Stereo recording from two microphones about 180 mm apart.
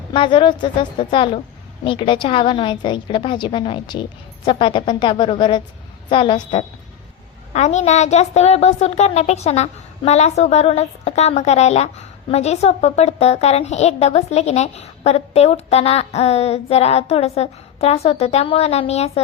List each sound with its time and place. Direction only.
0.1 s a woman's voice: 30° left (ahead or behind)
7.5 s a woman's voice: 40° left (ahead or behind)